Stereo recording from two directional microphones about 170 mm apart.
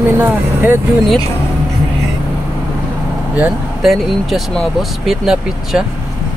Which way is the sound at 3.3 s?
5° right (ahead or behind).